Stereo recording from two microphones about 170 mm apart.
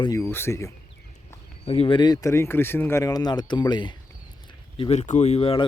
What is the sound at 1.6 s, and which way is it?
Speech, 35° left (ahead or behind).